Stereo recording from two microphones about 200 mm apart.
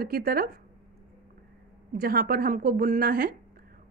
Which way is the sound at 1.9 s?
45° right (ahead or behind).